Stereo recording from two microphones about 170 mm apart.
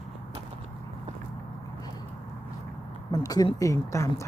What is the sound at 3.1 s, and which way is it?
Speech, 20° left (ahead or behind).